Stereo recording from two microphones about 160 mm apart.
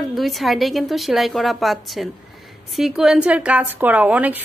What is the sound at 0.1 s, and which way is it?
A woman's voice, centre (ahead or behind).